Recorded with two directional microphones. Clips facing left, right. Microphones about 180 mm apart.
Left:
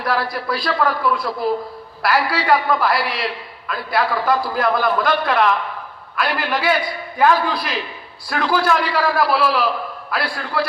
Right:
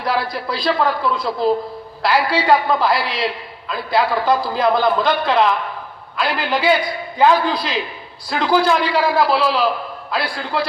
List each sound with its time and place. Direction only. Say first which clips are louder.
0.0 s a man's voice: even; 25° right (ahead or behind)